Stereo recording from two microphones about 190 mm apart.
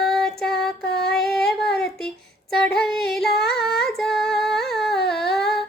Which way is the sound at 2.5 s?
5° left (ahead or behind).